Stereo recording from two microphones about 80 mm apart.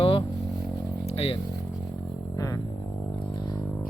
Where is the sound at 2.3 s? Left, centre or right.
Left.